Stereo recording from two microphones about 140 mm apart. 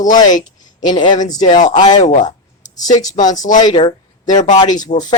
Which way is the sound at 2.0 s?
65° left (ahead or behind).